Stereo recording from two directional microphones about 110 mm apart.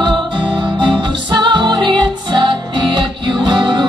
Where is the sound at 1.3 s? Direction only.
45° right (ahead or behind).